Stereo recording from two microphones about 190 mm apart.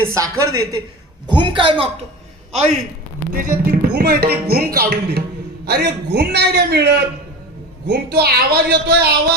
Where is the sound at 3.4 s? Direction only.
50° right (ahead or behind).